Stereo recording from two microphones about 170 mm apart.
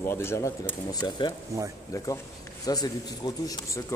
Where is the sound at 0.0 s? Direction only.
15° left (ahead or behind).